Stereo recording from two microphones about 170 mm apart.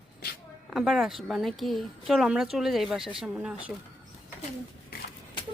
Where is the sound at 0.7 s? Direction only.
5° right (ahead or behind).